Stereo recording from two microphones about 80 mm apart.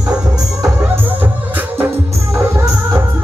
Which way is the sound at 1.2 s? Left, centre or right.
Right.